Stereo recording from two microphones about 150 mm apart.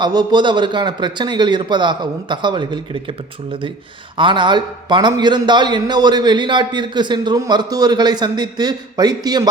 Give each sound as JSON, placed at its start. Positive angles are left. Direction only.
{"t": 0.0, "sound": "a man's voice", "side_deg": -30}
{"t": 4.2, "sound": "a man's voice", "side_deg": -35}